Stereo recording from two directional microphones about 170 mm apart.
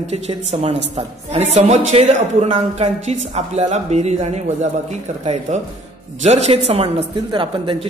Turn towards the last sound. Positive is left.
turn(degrees=-30)  # may be behind; listen again after turning